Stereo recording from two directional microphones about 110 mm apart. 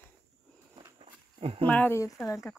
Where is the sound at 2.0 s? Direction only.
30° left (ahead or behind).